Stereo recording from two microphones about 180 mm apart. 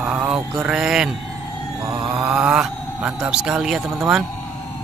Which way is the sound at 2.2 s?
5° right (ahead or behind).